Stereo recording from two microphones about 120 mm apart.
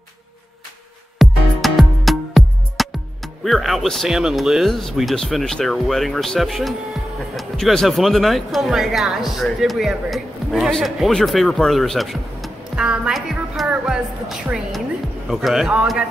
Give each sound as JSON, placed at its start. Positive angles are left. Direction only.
{"t": 1.1, "sound": "music", "side_deg": 0}
{"t": 3.4, "sound": "speech", "side_deg": 0}